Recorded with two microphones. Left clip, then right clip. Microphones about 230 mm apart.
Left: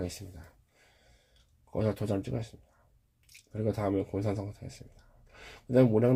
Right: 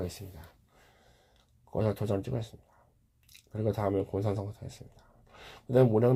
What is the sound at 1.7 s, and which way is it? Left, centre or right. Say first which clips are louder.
Speech: right 1 dB; right.